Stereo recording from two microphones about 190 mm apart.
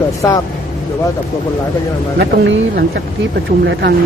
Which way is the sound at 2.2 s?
55° right (ahead or behind).